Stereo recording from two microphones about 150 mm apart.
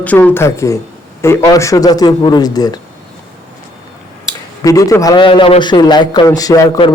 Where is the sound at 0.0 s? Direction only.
10° left (ahead or behind).